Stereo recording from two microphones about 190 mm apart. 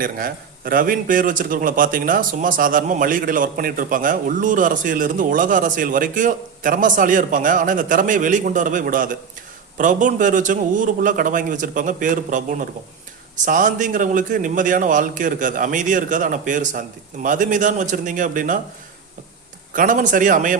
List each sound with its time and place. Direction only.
0.0 s a man's voice: 50° right (ahead or behind)
19.7 s a man's voice: 45° right (ahead or behind)